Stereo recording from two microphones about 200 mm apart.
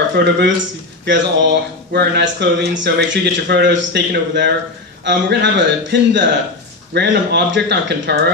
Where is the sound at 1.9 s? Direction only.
55° right (ahead or behind).